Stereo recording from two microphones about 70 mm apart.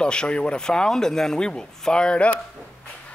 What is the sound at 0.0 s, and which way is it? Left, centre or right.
Speech, centre.